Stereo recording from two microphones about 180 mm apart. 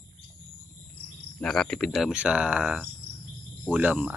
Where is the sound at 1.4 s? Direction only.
5° left (ahead or behind).